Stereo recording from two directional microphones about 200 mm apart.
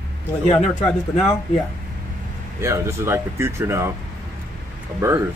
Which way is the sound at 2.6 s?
15° right (ahead or behind).